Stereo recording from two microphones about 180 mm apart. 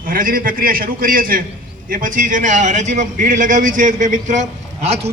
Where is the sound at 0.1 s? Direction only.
50° right (ahead or behind).